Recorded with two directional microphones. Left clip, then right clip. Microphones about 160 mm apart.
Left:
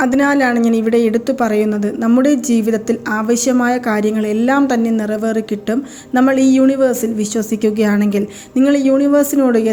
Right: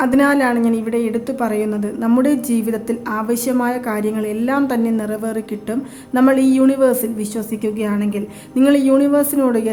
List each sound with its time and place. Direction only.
0.0 s a woman's voice: 20° left (ahead or behind)
8.5 s a woman's voice: 15° left (ahead or behind)